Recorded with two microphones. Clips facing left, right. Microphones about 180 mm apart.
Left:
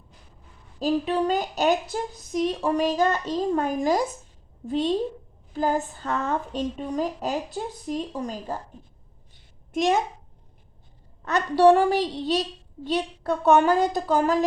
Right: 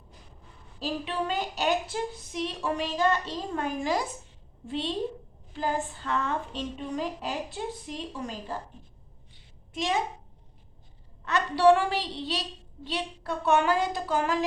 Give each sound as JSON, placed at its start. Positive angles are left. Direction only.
{"t": 0.8, "sound": "speech", "side_deg": 45}
{"t": 9.3, "sound": "a sound", "side_deg": 50}
{"t": 11.3, "sound": "a woman's voice", "side_deg": 40}